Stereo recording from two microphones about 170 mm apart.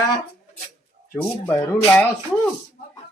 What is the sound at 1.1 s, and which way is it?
Speech, 15° left (ahead or behind).